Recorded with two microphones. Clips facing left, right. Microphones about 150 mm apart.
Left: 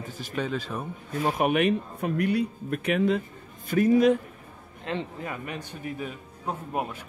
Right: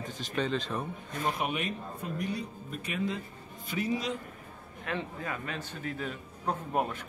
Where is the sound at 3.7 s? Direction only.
50° left (ahead or behind).